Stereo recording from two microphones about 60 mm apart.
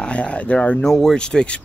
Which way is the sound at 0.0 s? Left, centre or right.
Centre.